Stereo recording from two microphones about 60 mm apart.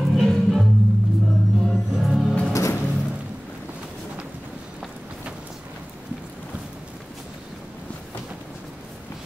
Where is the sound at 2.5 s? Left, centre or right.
Left.